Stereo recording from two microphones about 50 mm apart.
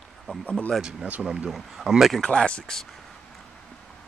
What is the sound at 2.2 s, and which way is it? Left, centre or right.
Speech, centre.